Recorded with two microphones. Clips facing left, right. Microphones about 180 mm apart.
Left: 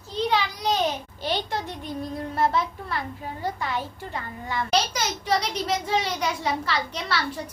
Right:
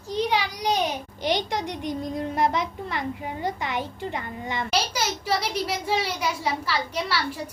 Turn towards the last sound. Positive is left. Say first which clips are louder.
# right 1 dB
turn(degrees=-10)  # may be behind; listen again after turning